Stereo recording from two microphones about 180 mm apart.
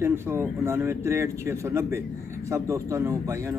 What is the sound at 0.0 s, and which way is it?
Speech, 15° right (ahead or behind).